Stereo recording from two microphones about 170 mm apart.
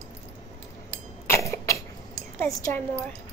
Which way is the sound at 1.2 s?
15° left (ahead or behind).